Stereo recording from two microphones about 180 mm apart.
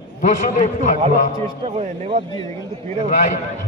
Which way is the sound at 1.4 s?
30° right (ahead or behind).